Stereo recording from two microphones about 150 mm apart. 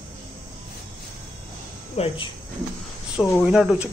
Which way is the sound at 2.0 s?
45° left (ahead or behind).